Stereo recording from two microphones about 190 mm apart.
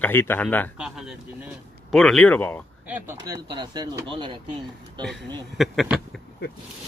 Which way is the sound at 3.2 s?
20° right (ahead or behind).